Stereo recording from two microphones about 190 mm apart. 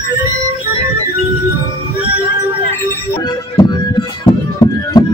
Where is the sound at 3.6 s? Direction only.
25° left (ahead or behind).